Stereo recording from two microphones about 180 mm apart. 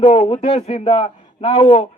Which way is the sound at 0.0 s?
30° left (ahead or behind).